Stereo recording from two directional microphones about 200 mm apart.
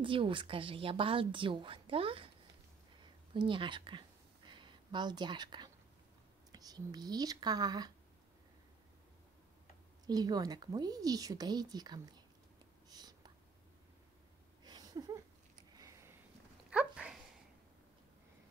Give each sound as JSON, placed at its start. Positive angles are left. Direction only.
{"t": 0.0, "sound": "a woman's voice", "side_deg": -25}
{"t": 10.0, "sound": "a woman's voice", "side_deg": -20}
{"t": 12.9, "sound": "whispering", "side_deg": -20}
{"t": 14.6, "sound": "a sound", "side_deg": -20}
{"t": 16.7, "sound": "dog", "side_deg": -5}